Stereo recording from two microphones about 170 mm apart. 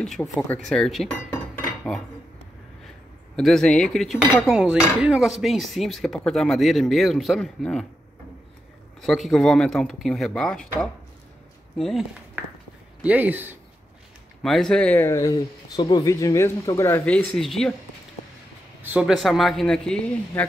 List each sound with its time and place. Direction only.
0.4 s speech: 5° left (ahead or behind)
3.3 s speech: 5° left (ahead or behind)
9.0 s speech: centre (ahead or behind)
14.4 s speech: centre (ahead or behind)
18.8 s speech: 5° right (ahead or behind)